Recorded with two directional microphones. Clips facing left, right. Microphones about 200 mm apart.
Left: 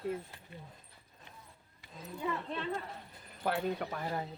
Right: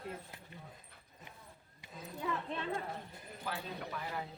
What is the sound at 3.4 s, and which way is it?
Speech, 55° left (ahead or behind).